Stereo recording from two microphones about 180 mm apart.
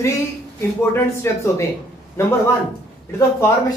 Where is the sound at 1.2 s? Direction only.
15° left (ahead or behind).